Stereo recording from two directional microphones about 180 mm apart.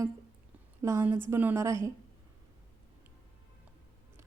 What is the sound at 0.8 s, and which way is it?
Speech, 15° right (ahead or behind).